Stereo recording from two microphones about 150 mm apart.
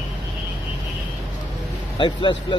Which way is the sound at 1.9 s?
35° left (ahead or behind).